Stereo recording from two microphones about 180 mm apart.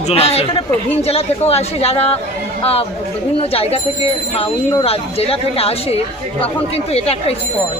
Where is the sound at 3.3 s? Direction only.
35° left (ahead or behind).